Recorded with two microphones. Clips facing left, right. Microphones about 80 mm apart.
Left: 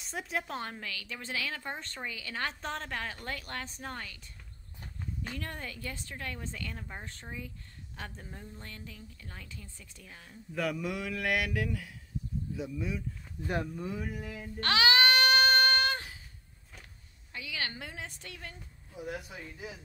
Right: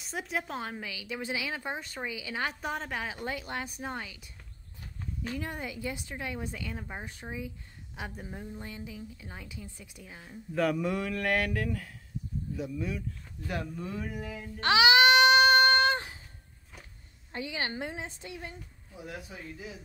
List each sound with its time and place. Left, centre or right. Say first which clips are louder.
0.0 s speech: right 1 dB; centre
5.3 s speech: right 7 dB; centre
10.5 s a man's voice: right 5 dB; centre
13.4 s speech: left 2 dB; left
13.7 s a man's voice: right 1 dB; centre
14.6 s a sound: right 4 dB; centre
17.3 s a woman's voice: right 4 dB; right